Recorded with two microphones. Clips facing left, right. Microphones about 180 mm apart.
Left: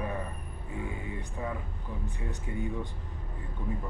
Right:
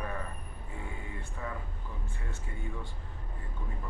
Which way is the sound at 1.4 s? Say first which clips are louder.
Left 3 dB; 20° left (ahead or behind).